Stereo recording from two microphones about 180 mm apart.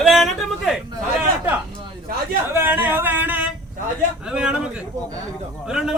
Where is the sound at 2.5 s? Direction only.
10° right (ahead or behind).